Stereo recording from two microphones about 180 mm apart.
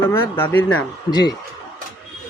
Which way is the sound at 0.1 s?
10° left (ahead or behind).